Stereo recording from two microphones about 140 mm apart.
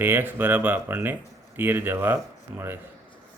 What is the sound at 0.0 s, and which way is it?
Speech, 15° right (ahead or behind).